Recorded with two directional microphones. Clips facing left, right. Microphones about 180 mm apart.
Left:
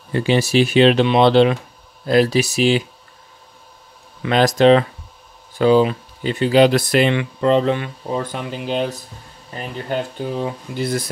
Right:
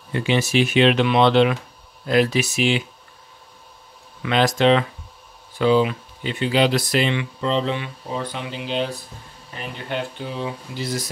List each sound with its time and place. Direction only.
0.1 s speech: 35° left (ahead or behind)
4.2 s speech: 40° left (ahead or behind); by 11.1 s 55° left (ahead or behind)